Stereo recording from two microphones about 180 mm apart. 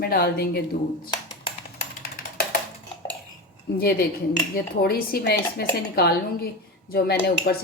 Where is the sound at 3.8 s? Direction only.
60° left (ahead or behind).